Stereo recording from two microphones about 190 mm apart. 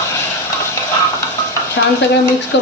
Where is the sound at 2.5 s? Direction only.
65° left (ahead or behind).